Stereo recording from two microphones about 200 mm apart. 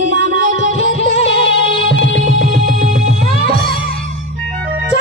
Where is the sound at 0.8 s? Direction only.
30° left (ahead or behind).